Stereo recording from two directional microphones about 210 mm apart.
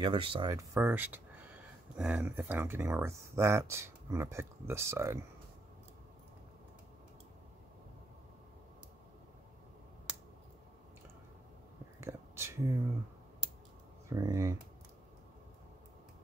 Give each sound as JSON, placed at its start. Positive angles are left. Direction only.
{"t": 0.0, "sound": "speech", "side_deg": -25}
{"t": 12.0, "sound": "a sound", "side_deg": -15}
{"t": 14.0, "sound": "speech", "side_deg": -15}